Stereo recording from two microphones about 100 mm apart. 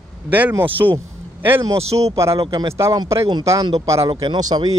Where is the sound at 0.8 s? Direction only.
25° right (ahead or behind).